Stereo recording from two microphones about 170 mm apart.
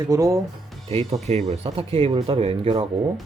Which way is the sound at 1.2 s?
40° right (ahead or behind).